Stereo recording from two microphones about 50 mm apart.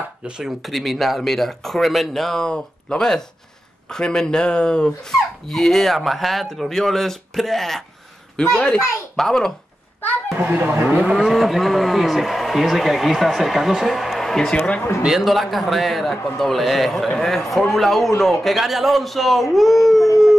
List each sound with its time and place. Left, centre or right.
0.2 s speech: centre
0.6 s speech: centre
2.4 s speech: centre
5.5 s speech: centre
10.5 s speech: right
11.0 s speech: centre
11.3 s speech: centre